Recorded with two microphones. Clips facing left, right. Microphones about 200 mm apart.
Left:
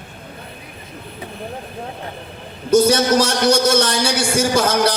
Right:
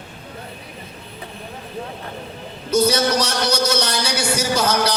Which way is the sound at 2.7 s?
50° left (ahead or behind).